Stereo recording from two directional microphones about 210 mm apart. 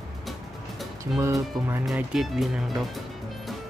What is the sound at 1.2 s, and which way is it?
Speech, 15° right (ahead or behind).